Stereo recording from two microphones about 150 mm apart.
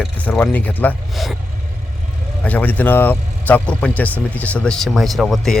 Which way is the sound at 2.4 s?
10° left (ahead or behind).